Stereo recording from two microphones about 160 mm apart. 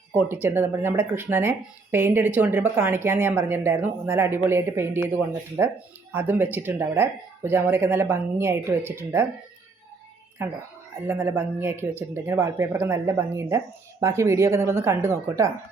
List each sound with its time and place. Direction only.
0.1 s speech: 10° right (ahead or behind)
10.4 s speech: 15° right (ahead or behind)